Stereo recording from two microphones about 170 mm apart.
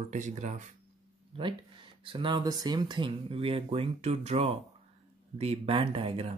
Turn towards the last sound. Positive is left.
turn(degrees=-35)  # may be behind; listen again after turning